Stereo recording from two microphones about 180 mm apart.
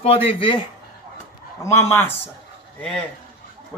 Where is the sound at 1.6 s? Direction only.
15° left (ahead or behind).